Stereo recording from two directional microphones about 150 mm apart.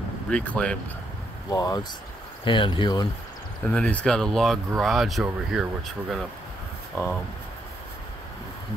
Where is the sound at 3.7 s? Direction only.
10° left (ahead or behind).